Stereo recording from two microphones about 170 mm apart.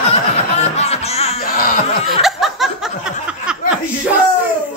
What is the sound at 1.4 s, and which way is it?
Laughter, 55° left (ahead or behind).